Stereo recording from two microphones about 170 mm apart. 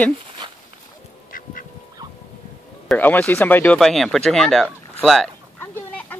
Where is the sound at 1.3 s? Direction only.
55° left (ahead or behind).